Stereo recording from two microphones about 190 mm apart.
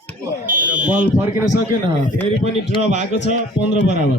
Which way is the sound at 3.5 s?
65° left (ahead or behind).